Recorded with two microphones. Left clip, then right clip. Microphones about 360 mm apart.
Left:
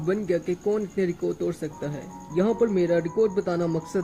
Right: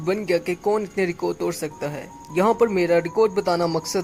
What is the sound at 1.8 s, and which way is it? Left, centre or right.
Speech, right.